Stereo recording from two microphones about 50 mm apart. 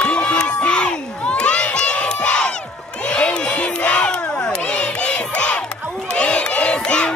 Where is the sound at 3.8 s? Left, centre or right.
Left.